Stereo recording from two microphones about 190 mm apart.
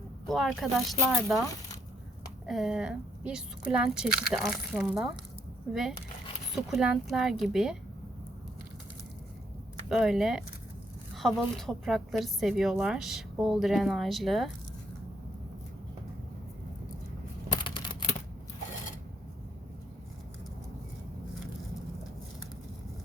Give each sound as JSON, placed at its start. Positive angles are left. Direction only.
{"t": 0.3, "sound": "a woman's voice", "side_deg": 0}
{"t": 2.5, "sound": "a woman's voice", "side_deg": 0}
{"t": 6.7, "sound": "a woman's voice", "side_deg": 0}
{"t": 9.9, "sound": "a woman's voice", "side_deg": 0}
{"t": 17.6, "sound": "a sound", "side_deg": 25}